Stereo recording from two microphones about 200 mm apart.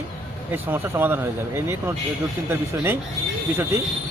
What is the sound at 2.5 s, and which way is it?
A man's voice, 10° right (ahead or behind).